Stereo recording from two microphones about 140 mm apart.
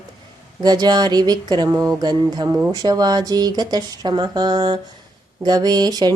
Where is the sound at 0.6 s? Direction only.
30° right (ahead or behind).